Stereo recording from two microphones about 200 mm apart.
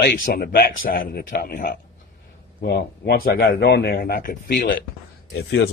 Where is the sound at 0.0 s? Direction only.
50° left (ahead or behind).